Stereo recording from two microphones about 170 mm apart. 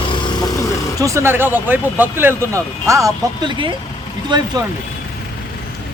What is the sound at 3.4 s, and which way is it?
Speech, 30° right (ahead or behind).